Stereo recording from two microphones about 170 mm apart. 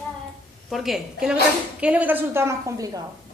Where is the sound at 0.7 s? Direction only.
Centre (ahead or behind); by 3.0 s 20° right (ahead or behind).